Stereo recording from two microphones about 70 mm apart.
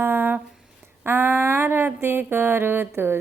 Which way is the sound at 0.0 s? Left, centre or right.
Right.